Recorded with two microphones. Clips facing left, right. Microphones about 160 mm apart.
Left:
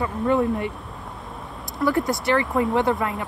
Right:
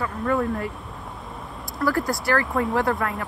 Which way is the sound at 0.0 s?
20° left (ahead or behind).